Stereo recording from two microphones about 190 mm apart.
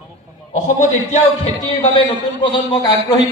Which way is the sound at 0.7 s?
35° left (ahead or behind).